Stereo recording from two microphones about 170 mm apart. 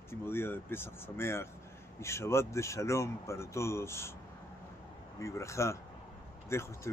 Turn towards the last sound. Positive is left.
turn(degrees=15)  # may be behind; listen again after turning